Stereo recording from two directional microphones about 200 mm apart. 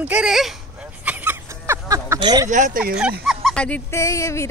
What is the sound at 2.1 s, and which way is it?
Speech, 20° right (ahead or behind).